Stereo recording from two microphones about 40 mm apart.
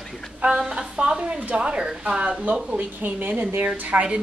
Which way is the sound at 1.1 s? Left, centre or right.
Right.